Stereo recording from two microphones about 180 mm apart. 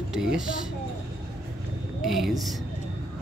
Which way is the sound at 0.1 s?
5° right (ahead or behind).